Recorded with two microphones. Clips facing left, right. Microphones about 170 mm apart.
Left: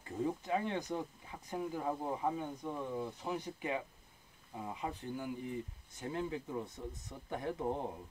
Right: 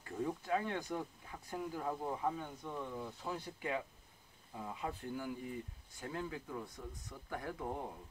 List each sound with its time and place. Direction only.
0.0 s speech: 20° left (ahead or behind)